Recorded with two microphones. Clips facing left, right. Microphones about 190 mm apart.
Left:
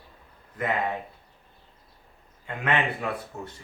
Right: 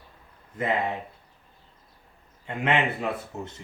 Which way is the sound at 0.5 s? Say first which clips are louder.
Right 1 dB; 25° right (ahead or behind).